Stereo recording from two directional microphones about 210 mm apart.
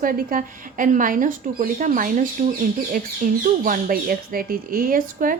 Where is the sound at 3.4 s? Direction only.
40° right (ahead or behind).